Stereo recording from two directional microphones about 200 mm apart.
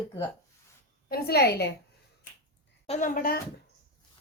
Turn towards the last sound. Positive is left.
turn(degrees=45)  # may be behind; listen again after turning